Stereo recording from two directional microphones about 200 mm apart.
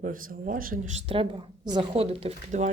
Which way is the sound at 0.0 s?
45° right (ahead or behind).